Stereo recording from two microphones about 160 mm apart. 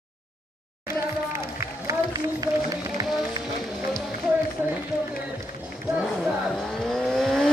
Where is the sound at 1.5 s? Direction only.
20° right (ahead or behind).